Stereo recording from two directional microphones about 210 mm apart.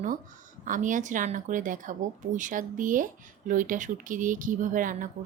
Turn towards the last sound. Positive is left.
turn(degrees=-40)  # may be behind; listen again after turning